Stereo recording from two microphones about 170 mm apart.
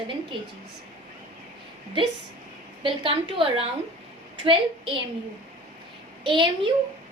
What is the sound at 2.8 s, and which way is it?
A woman's voice, 30° right (ahead or behind).